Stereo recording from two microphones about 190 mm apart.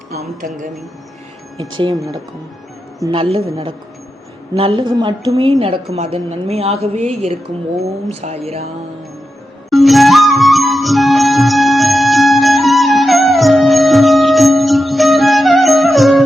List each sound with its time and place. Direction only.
0.1 s speech: 45° right (ahead or behind)
1.8 s a woman's voice: 20° right (ahead or behind)
9.6 s music: centre (ahead or behind)